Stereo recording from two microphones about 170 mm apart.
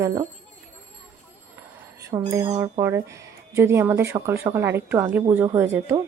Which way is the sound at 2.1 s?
20° right (ahead or behind).